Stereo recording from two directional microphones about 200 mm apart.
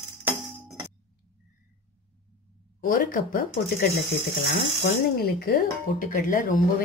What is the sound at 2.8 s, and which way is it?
Speech, 45° left (ahead or behind).